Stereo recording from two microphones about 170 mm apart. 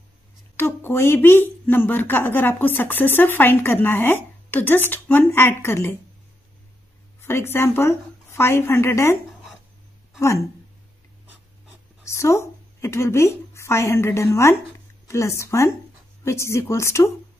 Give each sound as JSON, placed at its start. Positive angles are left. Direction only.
{"t": 0.6, "sound": "a woman's voice", "side_deg": 15}
{"t": 7.2, "sound": "a woman's voice", "side_deg": 15}
{"t": 12.0, "sound": "a woman's voice", "side_deg": 15}